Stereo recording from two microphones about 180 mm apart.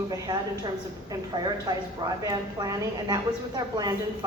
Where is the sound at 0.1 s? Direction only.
20° right (ahead or behind).